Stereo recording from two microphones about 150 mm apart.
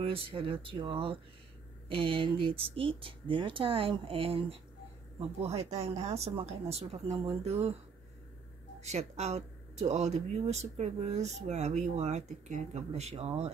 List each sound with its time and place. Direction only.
0.0 s speech: 40° right (ahead or behind)
8.8 s speech: 50° right (ahead or behind)